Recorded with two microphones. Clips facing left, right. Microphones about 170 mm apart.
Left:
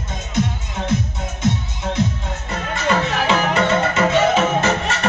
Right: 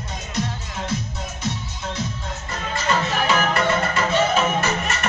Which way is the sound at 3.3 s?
20° left (ahead or behind).